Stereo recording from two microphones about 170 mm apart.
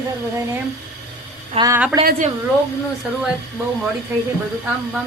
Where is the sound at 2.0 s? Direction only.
50° right (ahead or behind).